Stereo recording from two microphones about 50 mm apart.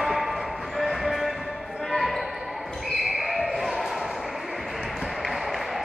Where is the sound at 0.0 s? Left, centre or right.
Centre.